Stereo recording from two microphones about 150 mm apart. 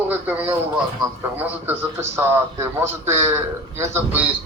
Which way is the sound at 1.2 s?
10° right (ahead or behind).